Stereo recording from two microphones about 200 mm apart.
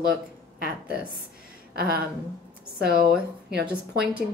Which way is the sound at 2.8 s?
50° right (ahead or behind).